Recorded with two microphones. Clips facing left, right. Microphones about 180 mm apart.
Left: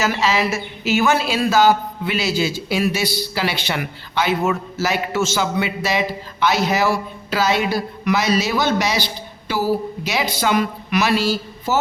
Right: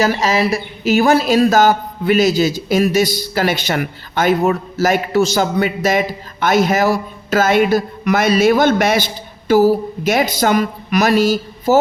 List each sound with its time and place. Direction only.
0.0 s speech: 40° right (ahead or behind)